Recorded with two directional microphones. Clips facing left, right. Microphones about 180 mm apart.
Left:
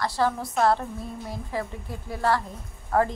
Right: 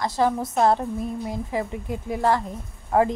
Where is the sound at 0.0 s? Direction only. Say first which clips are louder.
Right 3 dB; 20° right (ahead or behind).